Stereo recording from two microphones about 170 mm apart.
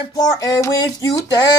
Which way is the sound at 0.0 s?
25° left (ahead or behind).